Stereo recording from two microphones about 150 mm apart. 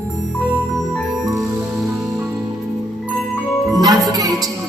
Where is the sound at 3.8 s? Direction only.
25° right (ahead or behind).